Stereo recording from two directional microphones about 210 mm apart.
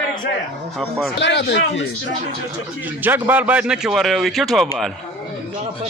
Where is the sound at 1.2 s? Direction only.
55° left (ahead or behind).